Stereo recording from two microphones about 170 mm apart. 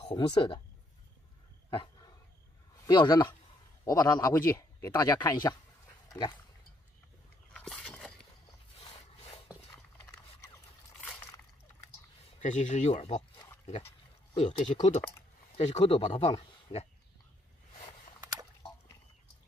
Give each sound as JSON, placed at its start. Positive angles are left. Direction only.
{"t": 0.0, "sound": "speech", "side_deg": 30}
{"t": 2.9, "sound": "speech", "side_deg": 25}
{"t": 6.0, "sound": "dog", "side_deg": 25}
{"t": 7.5, "sound": "a sound", "side_deg": 5}
{"t": 12.4, "sound": "speech", "side_deg": 45}
{"t": 14.3, "sound": "speech", "side_deg": 40}